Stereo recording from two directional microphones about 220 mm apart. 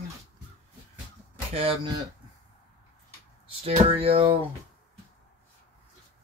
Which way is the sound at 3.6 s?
25° right (ahead or behind).